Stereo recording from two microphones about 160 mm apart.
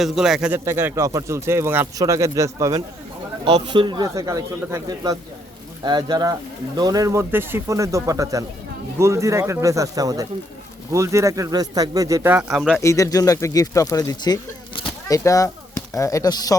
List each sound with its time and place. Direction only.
0.0 s a man's voice: 5° right (ahead or behind); by 2.8 s 20° right (ahead or behind)
3.4 s speech: 35° right (ahead or behind); by 12.8 s 5° right (ahead or behind)
12.8 s speech: 20° left (ahead or behind)